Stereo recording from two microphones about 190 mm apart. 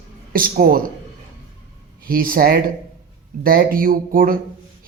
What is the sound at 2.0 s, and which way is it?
A man's voice, 50° right (ahead or behind).